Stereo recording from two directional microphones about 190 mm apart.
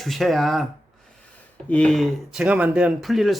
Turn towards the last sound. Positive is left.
turn(degrees=0)  # may be behind; listen again after turning